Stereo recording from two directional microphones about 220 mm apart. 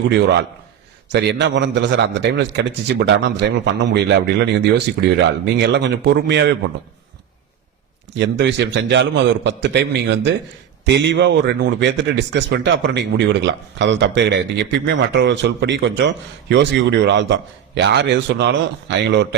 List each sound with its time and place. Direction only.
0.1 s speech: 50° right (ahead or behind)
8.2 s speech: 50° right (ahead or behind)